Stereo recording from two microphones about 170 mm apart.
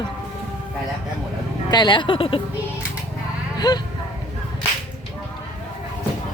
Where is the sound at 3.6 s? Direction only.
25° left (ahead or behind).